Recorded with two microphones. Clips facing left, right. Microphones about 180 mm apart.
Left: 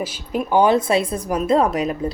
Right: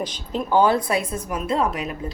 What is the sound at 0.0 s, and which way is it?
A woman's voice, 10° left (ahead or behind).